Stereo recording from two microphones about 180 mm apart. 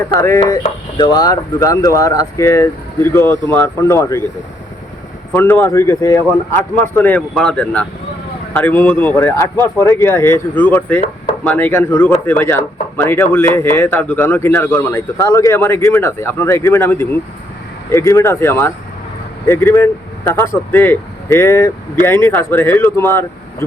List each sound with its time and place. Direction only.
0.3 s speech: 20° left (ahead or behind)
5.3 s speech: 10° left (ahead or behind)